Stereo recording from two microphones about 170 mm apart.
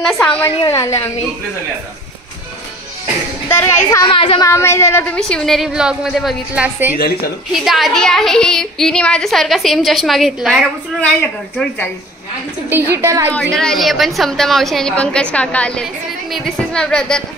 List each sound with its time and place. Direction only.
0.0 s a woman's voice: 5° left (ahead or behind)
0.7 s a woman's voice: 20° left (ahead or behind)
3.4 s a child's voice: 15° left (ahead or behind)
4.1 s a woman's voice: 30° left (ahead or behind)
4.5 s a woman's voice: 15° left (ahead or behind)
12.6 s a woman's voice: 15° right (ahead or behind)
13.3 s a woman's voice: 5° left (ahead or behind)